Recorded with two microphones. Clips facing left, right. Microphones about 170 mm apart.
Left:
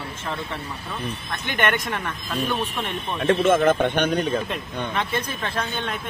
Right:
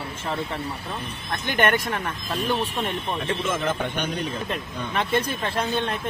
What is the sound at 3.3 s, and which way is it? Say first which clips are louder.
Speech: left 11 dB; 65° left (ahead or behind).